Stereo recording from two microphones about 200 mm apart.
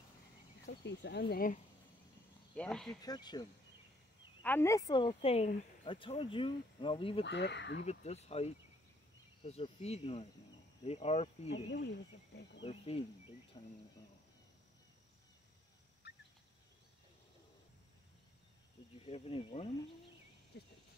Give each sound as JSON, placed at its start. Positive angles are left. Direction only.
{"t": 0.7, "sound": "speech", "side_deg": 60}
{"t": 2.5, "sound": "speech", "side_deg": 5}
{"t": 3.0, "sound": "speech", "side_deg": 20}
{"t": 4.4, "sound": "speech", "side_deg": 10}
{"t": 7.2, "sound": "speech", "side_deg": 60}
{"t": 7.8, "sound": "cricket", "side_deg": 35}
{"t": 11.5, "sound": "speech", "side_deg": 55}
{"t": 12.6, "sound": "speech", "side_deg": 30}
{"t": 16.0, "sound": "a sound", "side_deg": 55}
{"t": 19.0, "sound": "speech", "side_deg": 30}